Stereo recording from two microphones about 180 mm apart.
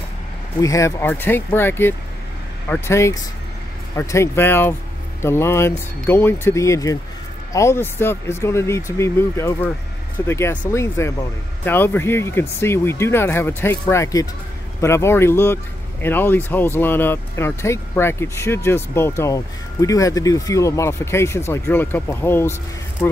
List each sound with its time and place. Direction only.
0.6 s speech: 20° left (ahead or behind)